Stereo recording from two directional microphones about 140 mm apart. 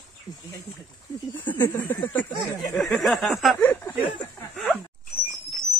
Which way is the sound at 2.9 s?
5° left (ahead or behind).